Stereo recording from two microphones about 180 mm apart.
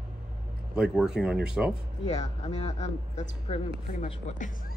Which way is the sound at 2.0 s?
40° left (ahead or behind).